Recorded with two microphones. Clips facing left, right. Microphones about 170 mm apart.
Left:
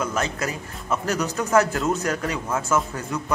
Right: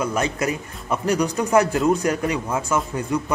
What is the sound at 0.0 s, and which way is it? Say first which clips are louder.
Speech: right 3 dB; 15° right (ahead or behind).